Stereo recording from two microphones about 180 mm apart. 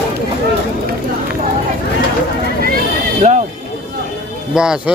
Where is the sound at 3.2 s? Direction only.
45° right (ahead or behind).